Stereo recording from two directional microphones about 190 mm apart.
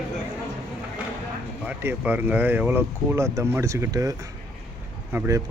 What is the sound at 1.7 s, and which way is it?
Speech, 10° right (ahead or behind).